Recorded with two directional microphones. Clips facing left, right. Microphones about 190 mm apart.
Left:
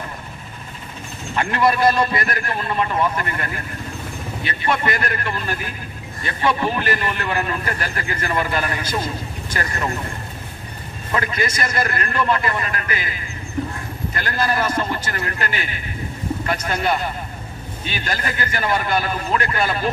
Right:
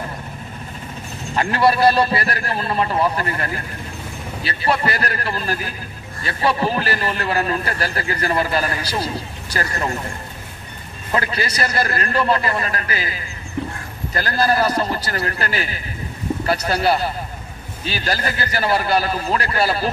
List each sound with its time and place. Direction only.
1.3 s a man's voice: 35° right (ahead or behind)
11.1 s a man's voice: 35° right (ahead or behind)